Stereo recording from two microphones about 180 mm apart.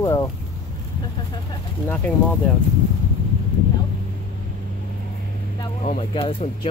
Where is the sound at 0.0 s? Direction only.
15° left (ahead or behind).